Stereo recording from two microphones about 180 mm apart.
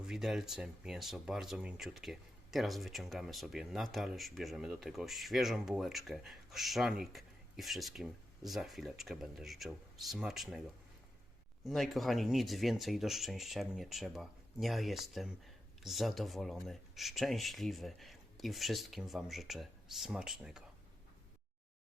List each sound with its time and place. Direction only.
0.0 s speech: centre (ahead or behind)
11.6 s speech: centre (ahead or behind)